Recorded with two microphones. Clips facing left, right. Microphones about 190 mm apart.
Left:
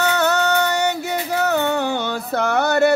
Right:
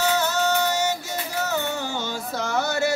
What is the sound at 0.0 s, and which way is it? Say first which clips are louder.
Music: left 4 dB; 65° left (ahead or behind).